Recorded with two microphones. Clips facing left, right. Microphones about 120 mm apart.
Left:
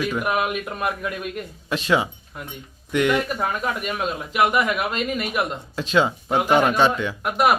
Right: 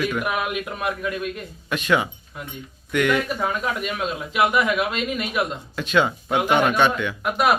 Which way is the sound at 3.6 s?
Centre (ahead or behind).